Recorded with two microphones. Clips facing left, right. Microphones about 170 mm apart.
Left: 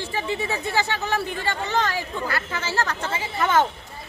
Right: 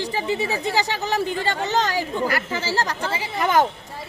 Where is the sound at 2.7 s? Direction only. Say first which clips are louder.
Left 1 dB; 35° right (ahead or behind).